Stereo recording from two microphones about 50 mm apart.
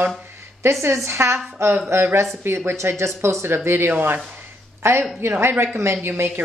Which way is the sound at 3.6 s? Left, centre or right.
Right.